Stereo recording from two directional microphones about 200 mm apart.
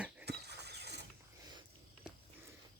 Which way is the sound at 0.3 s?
55° right (ahead or behind).